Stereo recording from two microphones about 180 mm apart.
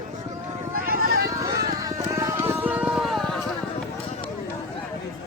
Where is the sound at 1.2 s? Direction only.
20° right (ahead or behind); by 3.4 s centre (ahead or behind).